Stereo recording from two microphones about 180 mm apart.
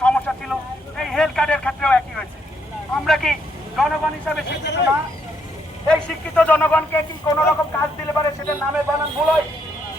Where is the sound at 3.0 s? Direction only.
Centre (ahead or behind).